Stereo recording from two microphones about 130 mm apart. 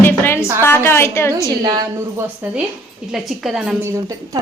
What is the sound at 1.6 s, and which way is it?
Speech, 30° right (ahead or behind).